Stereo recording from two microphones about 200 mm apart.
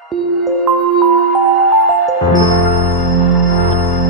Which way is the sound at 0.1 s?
Centre (ahead or behind).